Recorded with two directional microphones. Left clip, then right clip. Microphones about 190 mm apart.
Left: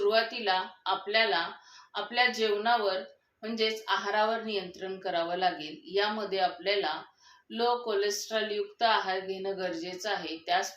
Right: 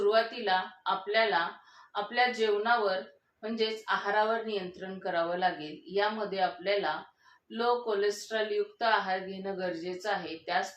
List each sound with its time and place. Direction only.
0.1 s a woman's voice: 40° left (ahead or behind)